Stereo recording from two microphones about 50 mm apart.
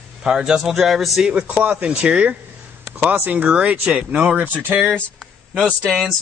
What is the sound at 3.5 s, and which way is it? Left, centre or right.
Speech, right.